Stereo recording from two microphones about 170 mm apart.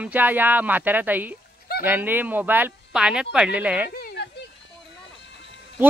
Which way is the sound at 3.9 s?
65° left (ahead or behind).